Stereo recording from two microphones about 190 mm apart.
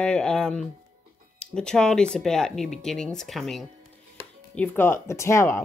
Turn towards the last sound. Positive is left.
turn(degrees=15)  # may be behind; listen again after turning